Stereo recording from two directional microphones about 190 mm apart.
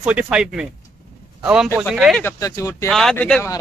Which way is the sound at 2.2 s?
15° left (ahead or behind).